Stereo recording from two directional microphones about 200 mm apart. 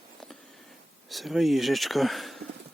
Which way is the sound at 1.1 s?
Centre (ahead or behind).